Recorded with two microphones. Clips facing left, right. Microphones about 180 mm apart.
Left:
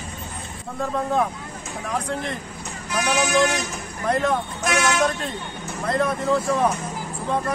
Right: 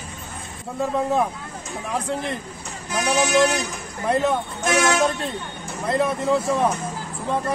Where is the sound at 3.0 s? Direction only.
35° right (ahead or behind).